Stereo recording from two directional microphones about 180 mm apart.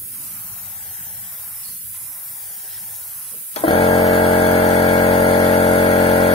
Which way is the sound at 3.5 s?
30° left (ahead or behind).